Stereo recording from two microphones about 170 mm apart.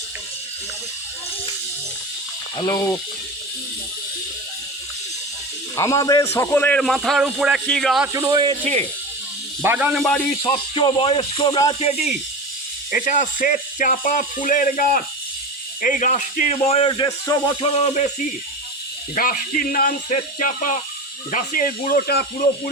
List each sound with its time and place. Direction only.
2.6 s speech: 20° left (ahead or behind)
5.7 s a man's voice: 15° left (ahead or behind); by 8.0 s centre (ahead or behind)
8.0 s speech: 15° right (ahead or behind)
8.6 s speech: 40° right (ahead or behind)
9.6 s a man's voice: 10° right (ahead or behind)
10.0 s a man's voice: 10° left (ahead or behind)
10.4 s speech: 25° left (ahead or behind)
11.8 s speech: 40° left (ahead or behind)
12.9 s speech: 50° left (ahead or behind); by 17.7 s 25° left (ahead or behind)
17.7 s speech: 45° left (ahead or behind)
19.1 s speech: 55° left (ahead or behind)